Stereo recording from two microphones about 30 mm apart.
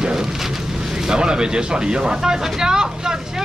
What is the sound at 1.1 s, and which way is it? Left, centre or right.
Speech, right.